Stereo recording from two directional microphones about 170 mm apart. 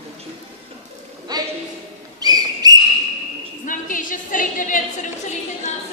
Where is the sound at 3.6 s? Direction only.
50° left (ahead or behind).